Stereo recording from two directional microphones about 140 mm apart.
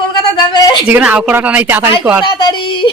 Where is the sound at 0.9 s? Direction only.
10° right (ahead or behind).